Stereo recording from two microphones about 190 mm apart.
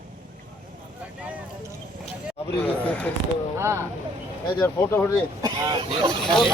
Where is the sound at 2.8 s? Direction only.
5° left (ahead or behind).